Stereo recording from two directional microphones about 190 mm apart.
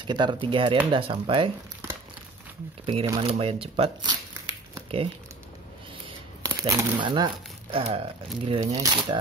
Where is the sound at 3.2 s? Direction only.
30° right (ahead or behind).